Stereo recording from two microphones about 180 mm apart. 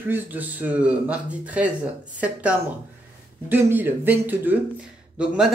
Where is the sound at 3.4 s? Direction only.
10° right (ahead or behind).